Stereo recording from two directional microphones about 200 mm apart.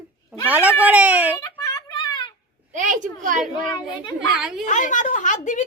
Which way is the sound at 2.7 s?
40° right (ahead or behind).